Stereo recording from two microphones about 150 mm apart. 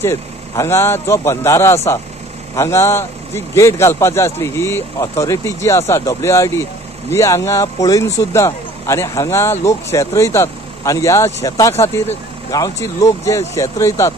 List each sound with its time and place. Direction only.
0.0 s a man's voice: 15° left (ahead or behind)